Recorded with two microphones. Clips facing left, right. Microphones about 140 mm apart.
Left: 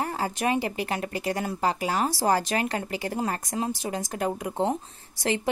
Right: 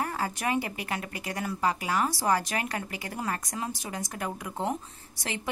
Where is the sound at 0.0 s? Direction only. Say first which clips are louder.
Left 3 dB; 25° left (ahead or behind).